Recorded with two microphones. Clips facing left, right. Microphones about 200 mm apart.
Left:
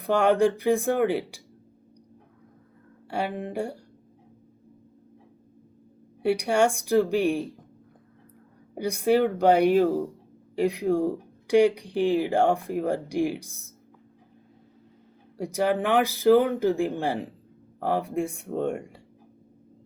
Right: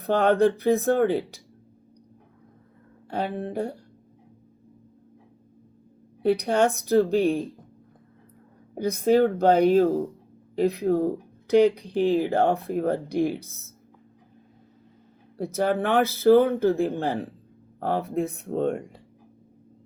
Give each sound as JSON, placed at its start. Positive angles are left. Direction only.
{"t": 0.0, "sound": "speech", "side_deg": 10}
{"t": 3.1, "sound": "speech", "side_deg": 10}
{"t": 6.2, "sound": "speech", "side_deg": 10}
{"t": 8.7, "sound": "speech", "side_deg": 10}
{"t": 15.4, "sound": "speech", "side_deg": 15}